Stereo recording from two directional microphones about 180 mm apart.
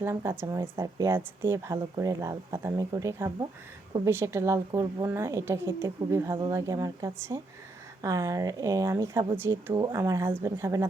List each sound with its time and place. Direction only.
0.0 s a woman's voice: 15° right (ahead or behind)